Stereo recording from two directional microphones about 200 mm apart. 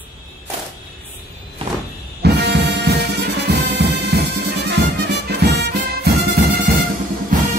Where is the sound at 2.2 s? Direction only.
55° right (ahead or behind).